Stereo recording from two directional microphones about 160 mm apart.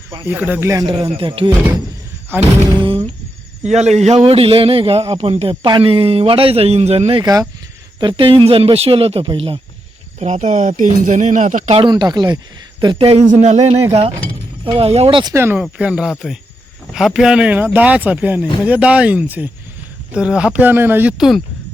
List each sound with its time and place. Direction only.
0.3 s speech: 10° right (ahead or behind)
1.1 s a man's voice: 35° right (ahead or behind)
10.2 s speech: 45° right (ahead or behind)
11.8 s a man's voice: 25° right (ahead or behind); by 13.7 s 45° right (ahead or behind)
14.8 s a man's voice: 40° right (ahead or behind)
15.3 s speech: 15° right (ahead or behind)